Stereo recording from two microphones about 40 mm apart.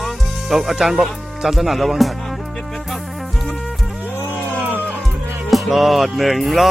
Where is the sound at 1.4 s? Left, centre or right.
Centre.